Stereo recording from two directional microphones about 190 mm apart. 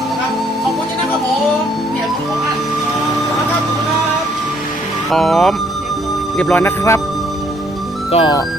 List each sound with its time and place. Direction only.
5.1 s speech: centre (ahead or behind)
8.1 s speech: 25° left (ahead or behind)